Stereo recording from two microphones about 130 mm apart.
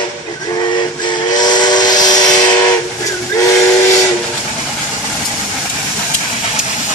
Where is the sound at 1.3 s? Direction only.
30° left (ahead or behind).